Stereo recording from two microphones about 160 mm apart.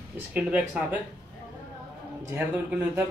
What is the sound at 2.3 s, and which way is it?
Speech, 10° right (ahead or behind).